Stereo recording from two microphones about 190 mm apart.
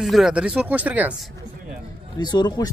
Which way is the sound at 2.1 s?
20° left (ahead or behind).